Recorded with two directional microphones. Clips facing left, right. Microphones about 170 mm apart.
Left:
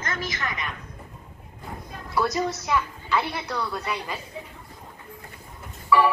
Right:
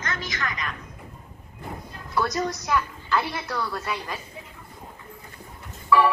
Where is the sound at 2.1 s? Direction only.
Centre (ahead or behind).